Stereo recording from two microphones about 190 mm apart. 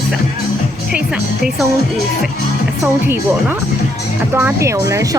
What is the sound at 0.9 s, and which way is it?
Speech, 5° right (ahead or behind).